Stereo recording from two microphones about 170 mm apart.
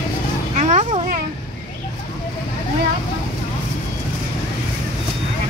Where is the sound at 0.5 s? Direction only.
45° right (ahead or behind).